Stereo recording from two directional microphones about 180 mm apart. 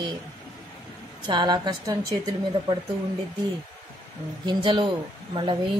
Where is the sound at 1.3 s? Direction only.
25° right (ahead or behind).